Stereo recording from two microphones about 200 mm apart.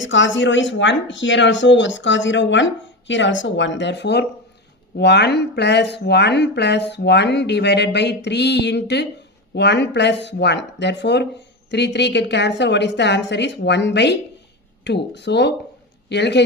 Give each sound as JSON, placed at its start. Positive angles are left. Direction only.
{"t": 0.0, "sound": "speech", "side_deg": 70}